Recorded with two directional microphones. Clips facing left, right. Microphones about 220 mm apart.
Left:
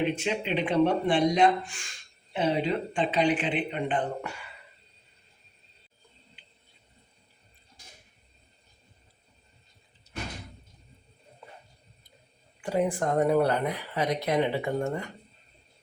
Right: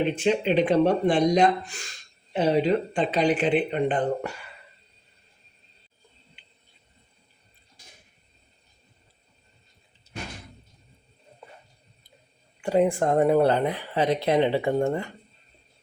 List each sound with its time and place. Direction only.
0.2 s speech: 35° right (ahead or behind)
12.6 s speech: 25° right (ahead or behind)